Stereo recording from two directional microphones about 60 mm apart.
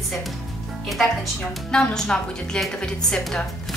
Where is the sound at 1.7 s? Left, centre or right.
Centre.